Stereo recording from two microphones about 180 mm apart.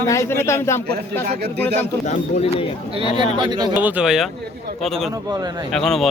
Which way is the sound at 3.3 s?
25° right (ahead or behind).